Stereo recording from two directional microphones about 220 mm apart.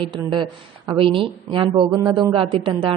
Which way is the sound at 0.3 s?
20° right (ahead or behind).